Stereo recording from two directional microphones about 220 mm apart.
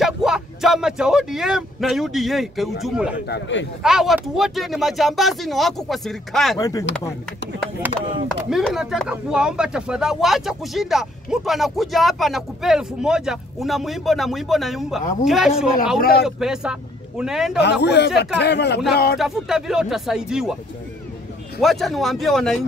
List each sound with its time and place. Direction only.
0.0 s speech: centre (ahead or behind)
3.3 s speech: 55° left (ahead or behind)
3.8 s speech: centre (ahead or behind)
6.6 s speech: 15° left (ahead or behind)
8.5 s speech: centre (ahead or behind)
16.0 s speech: 45° left (ahead or behind)
16.3 s speech: centre (ahead or behind)
17.6 s speech: 50° left (ahead or behind)
19.1 s speech: centre (ahead or behind)
21.5 s speech: centre (ahead or behind)